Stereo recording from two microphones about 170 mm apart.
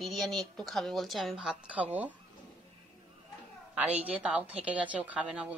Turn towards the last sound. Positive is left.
turn(degrees=-5)  # may be behind; listen again after turning